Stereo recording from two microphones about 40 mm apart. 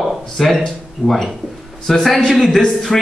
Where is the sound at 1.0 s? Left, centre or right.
Centre.